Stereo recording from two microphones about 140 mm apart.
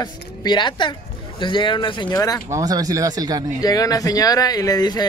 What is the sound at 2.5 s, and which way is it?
Speech, 25° right (ahead or behind).